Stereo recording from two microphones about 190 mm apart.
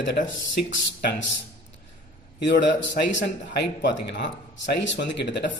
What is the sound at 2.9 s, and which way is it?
A man's voice, 70° left (ahead or behind).